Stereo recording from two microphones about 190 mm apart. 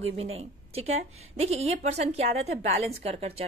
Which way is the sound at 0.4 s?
30° right (ahead or behind).